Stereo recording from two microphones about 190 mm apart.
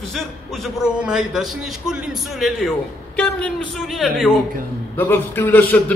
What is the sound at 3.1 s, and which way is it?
A man's voice, 5° left (ahead or behind).